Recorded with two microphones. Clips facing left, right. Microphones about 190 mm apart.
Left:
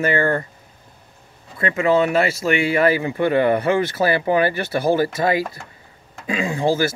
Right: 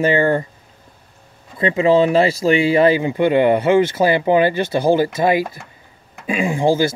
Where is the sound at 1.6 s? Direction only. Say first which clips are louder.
Right 4 dB; 30° right (ahead or behind).